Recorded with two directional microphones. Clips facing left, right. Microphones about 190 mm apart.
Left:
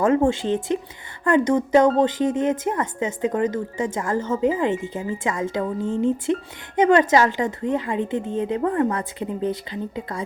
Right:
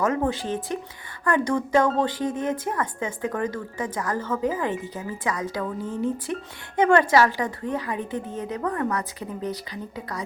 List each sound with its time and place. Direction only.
0.0 s speech: 30° left (ahead or behind)